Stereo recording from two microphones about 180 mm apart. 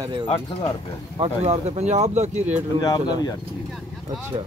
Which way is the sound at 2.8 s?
20° left (ahead or behind).